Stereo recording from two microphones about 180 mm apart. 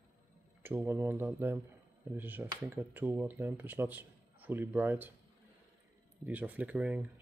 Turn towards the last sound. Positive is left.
turn(degrees=-10)  # may be behind; listen again after turning